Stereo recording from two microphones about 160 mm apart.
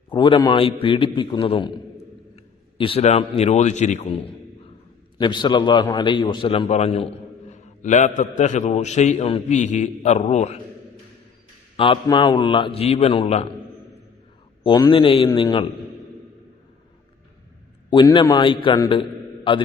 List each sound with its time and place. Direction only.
0.1 s a man's voice: 30° left (ahead or behind)
5.1 s a man's voice: 30° left (ahead or behind); by 10.6 s 45° left (ahead or behind)
12.0 s a man's voice: 25° left (ahead or behind)
14.6 s a man's voice: 30° left (ahead or behind)
17.9 s a man's voice: 30° left (ahead or behind)